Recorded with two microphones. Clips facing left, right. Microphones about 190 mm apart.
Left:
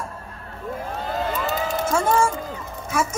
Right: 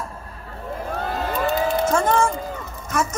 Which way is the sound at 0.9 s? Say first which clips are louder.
Right 1 dB; 55° right (ahead or behind).